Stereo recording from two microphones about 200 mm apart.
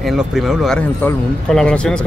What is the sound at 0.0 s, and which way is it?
Speech, centre (ahead or behind).